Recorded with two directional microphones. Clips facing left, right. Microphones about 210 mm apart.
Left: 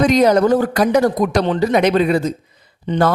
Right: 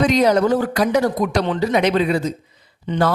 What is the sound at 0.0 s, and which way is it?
A man's voice, 45° left (ahead or behind).